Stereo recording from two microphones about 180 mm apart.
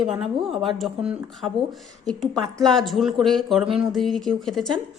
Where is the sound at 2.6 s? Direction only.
Centre (ahead or behind).